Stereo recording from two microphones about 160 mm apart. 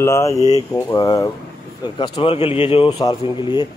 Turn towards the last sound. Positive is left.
turn(degrees=30)  # may be behind; listen again after turning